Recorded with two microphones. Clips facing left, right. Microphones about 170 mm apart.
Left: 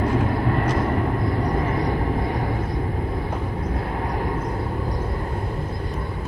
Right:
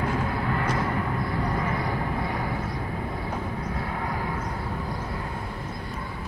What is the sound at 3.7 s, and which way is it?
Vehicle, 40° left (ahead or behind).